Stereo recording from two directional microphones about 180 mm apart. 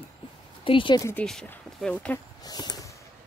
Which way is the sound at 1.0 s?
10° left (ahead or behind).